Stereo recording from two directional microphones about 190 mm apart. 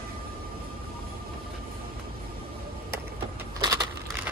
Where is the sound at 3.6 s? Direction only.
20° right (ahead or behind).